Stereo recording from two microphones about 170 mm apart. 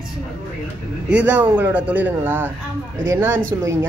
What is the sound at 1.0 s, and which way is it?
Speech, 10° right (ahead or behind).